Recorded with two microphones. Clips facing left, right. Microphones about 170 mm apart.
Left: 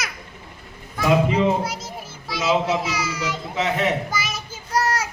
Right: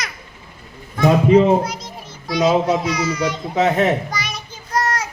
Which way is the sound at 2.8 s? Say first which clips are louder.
Right 6 dB; 5° left (ahead or behind).